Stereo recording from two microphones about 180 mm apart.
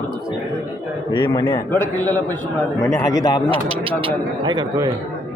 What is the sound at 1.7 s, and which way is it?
A man's voice, 10° left (ahead or behind).